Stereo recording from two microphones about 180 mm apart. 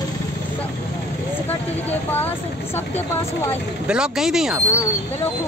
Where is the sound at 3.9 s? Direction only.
5° right (ahead or behind).